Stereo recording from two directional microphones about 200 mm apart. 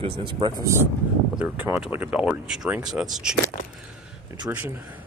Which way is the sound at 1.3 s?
10° right (ahead or behind).